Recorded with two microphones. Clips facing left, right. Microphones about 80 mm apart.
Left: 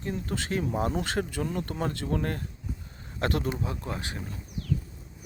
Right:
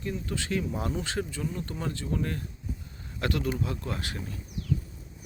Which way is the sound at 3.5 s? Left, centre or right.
Left.